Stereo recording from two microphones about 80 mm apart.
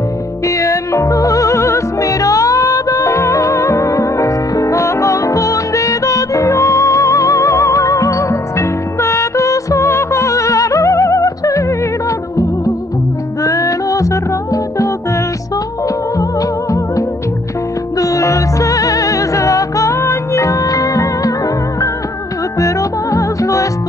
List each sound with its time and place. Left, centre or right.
0.5 s music: left
13.4 s music: left
16.2 s music: left
22.6 s music: left